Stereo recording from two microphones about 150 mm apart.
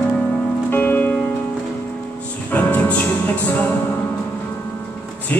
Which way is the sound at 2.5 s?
10° left (ahead or behind).